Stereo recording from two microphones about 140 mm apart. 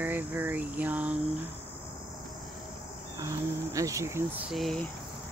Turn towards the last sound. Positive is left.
turn(degrees=0)  # may be behind; listen again after turning